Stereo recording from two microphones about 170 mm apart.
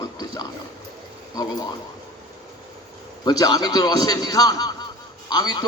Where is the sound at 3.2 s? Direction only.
25° left (ahead or behind).